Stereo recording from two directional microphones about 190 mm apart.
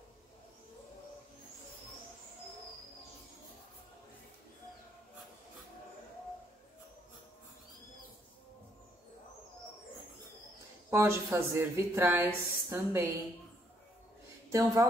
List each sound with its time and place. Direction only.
10.9 s speech: 10° right (ahead or behind)
14.5 s speech: 15° right (ahead or behind)